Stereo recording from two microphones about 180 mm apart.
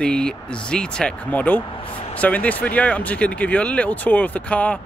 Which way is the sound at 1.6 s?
30° left (ahead or behind).